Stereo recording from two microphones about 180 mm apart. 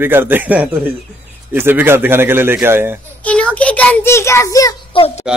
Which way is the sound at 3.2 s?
5° left (ahead or behind).